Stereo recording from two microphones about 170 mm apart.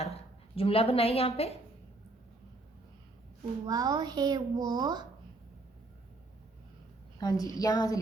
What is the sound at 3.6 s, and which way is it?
A child's voice, 20° right (ahead or behind).